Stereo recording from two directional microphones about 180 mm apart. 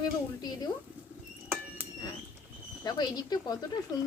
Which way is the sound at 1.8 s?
10° right (ahead or behind).